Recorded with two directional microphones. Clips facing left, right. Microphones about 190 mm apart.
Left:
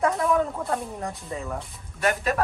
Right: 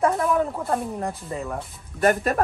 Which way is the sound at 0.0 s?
Centre (ahead or behind).